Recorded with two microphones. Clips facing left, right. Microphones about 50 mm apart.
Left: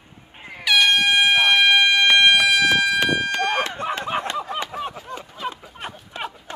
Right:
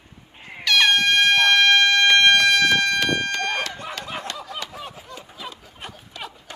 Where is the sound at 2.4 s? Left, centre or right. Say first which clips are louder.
Even; centre.